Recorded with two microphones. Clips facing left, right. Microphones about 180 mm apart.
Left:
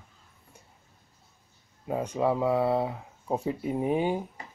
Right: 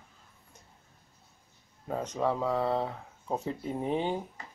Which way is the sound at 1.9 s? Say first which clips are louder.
Left 3 dB; 10° left (ahead or behind).